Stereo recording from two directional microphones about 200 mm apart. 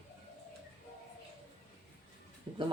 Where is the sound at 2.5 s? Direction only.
20° right (ahead or behind).